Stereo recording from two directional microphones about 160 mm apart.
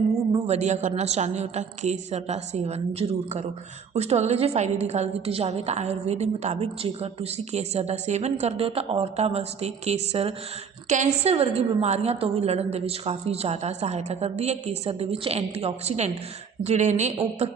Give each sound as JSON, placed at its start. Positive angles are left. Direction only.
{"t": 0.4, "sound": "a woman's voice", "side_deg": -45}
{"t": 10.8, "sound": "a woman's voice", "side_deg": -50}